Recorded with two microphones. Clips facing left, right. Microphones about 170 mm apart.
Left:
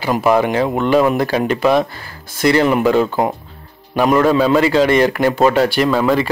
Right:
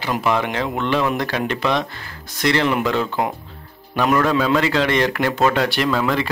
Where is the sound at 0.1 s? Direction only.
40° left (ahead or behind).